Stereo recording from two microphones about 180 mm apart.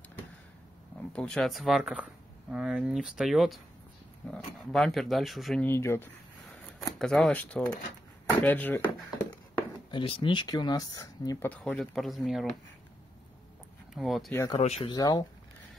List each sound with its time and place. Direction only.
1.1 s speech: 5° left (ahead or behind)
5.7 s speech: 15° left (ahead or behind)
9.8 s speech: 30° left (ahead or behind)
11.4 s speech: 10° left (ahead or behind)
13.9 s speech: centre (ahead or behind)
14.6 s speech: 35° left (ahead or behind)
14.9 s speech: 20° left (ahead or behind)